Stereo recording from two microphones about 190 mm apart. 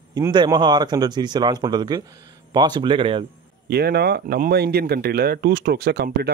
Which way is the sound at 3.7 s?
55° right (ahead or behind).